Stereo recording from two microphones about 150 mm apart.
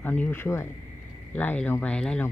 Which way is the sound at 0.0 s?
10° left (ahead or behind).